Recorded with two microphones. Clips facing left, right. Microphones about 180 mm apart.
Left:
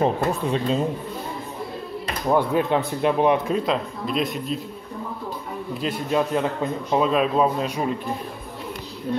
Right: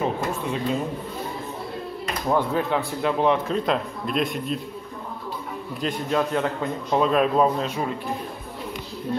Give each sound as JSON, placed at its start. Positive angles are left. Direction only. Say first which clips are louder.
{"t": 0.0, "sound": "speech", "louder": "left 4 dB", "side_deg": 35}
{"t": 2.2, "sound": "speech", "louder": "left 3 dB", "side_deg": 15}
{"t": 3.6, "sound": "a man's voice", "louder": "even", "side_deg": 0}
{"t": 5.8, "sound": "a man's voice", "louder": "left 1 dB", "side_deg": 10}